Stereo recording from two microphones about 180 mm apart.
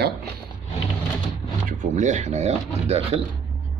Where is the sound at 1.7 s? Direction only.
45° right (ahead or behind).